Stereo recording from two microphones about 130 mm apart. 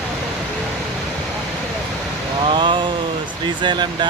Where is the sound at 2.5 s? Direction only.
40° right (ahead or behind).